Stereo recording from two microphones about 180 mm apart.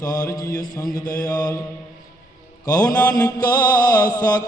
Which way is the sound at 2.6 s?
20° left (ahead or behind).